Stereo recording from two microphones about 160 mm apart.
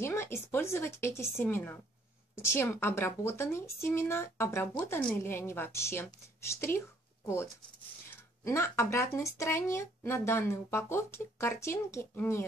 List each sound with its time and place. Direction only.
0.0 s speech: 15° left (ahead or behind)
8.1 s speech: 15° left (ahead or behind)